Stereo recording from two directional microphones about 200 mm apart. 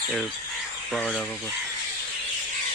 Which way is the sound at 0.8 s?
5° left (ahead or behind).